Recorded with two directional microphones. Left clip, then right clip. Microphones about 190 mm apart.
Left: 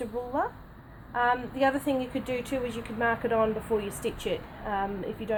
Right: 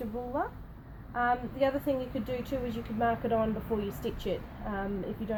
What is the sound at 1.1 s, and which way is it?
A woman's voice, 35° left (ahead or behind).